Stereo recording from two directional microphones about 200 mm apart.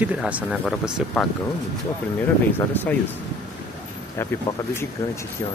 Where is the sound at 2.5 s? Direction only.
10° left (ahead or behind).